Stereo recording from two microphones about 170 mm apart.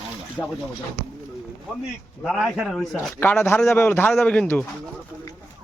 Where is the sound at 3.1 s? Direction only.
10° left (ahead or behind).